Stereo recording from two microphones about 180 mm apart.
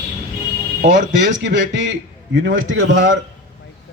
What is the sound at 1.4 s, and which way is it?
Speech, 90° right.